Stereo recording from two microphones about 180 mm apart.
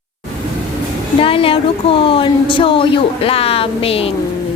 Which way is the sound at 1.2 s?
30° left (ahead or behind).